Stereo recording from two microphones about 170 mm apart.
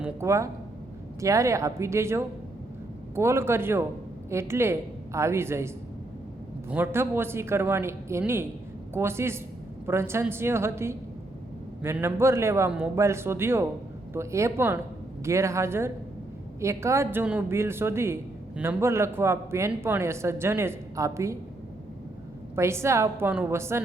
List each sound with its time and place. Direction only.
0.0 s a woman's voice: 15° right (ahead or behind)
22.5 s a woman's voice: 15° right (ahead or behind)